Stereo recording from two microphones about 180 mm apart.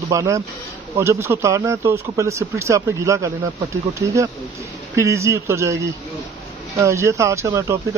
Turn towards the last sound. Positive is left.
turn(degrees=-15)  # may be behind; listen again after turning